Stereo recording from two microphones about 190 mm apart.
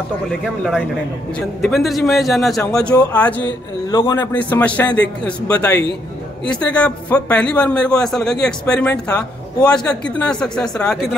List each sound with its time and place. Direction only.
0.3 s a man's voice: 5° right (ahead or behind)
3.9 s a man's voice: 25° left (ahead or behind)
4.2 s a man's voice: 10° left (ahead or behind)